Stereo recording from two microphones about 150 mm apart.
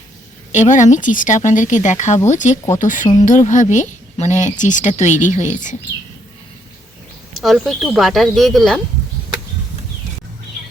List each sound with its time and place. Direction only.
0.5 s speech: 55° left (ahead or behind)
7.3 s speech: centre (ahead or behind)